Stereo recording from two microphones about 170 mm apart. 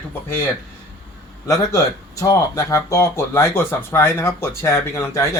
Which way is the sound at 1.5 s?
20° left (ahead or behind).